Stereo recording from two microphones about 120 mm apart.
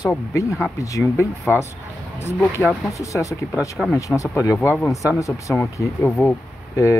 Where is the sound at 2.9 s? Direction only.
25° left (ahead or behind).